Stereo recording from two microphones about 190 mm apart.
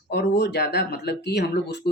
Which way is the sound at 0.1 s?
60° left (ahead or behind).